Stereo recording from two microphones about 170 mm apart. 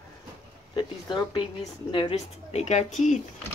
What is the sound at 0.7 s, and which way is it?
Speech, 30° left (ahead or behind).